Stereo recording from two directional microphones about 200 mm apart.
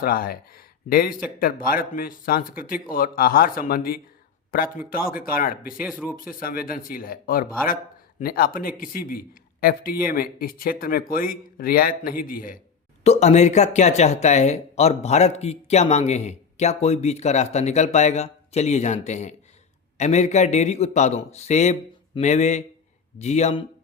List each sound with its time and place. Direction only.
0.0 s speech: 45° left (ahead or behind)
5.8 s speech: 5° right (ahead or behind)
6.4 s speech: 45° left (ahead or behind)